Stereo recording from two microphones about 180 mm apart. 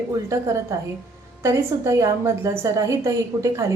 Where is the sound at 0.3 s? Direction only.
15° right (ahead or behind).